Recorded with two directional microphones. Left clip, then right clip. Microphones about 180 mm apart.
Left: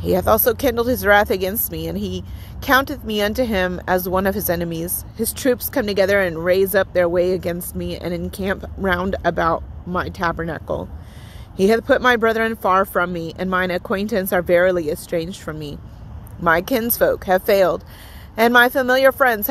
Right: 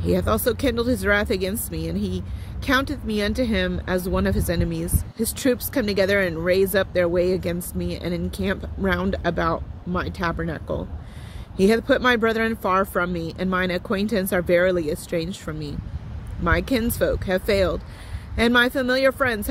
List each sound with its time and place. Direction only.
0.0 s speech: 15° right (ahead or behind)